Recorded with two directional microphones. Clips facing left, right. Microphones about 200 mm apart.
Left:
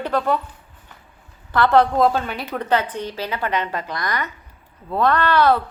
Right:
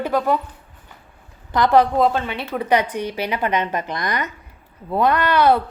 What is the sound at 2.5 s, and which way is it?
A woman's voice, 10° right (ahead or behind).